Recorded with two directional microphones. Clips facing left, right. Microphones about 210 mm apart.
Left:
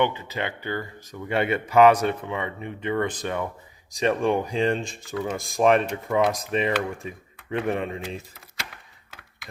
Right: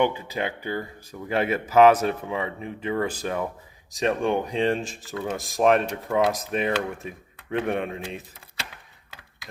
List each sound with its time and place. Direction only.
0.0 s speech: 10° right (ahead or behind)